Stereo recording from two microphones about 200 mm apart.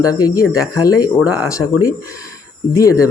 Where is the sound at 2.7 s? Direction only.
15° left (ahead or behind).